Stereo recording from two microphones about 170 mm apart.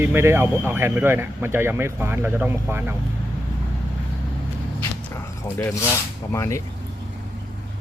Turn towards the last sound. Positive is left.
turn(degrees=15)  # may be behind; listen again after turning